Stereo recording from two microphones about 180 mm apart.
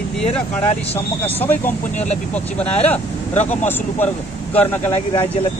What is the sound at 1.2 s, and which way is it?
Speech, 10° left (ahead or behind).